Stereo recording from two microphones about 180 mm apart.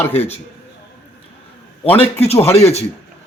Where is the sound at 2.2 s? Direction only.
35° left (ahead or behind).